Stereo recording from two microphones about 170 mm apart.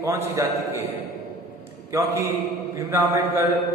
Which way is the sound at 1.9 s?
15° right (ahead or behind).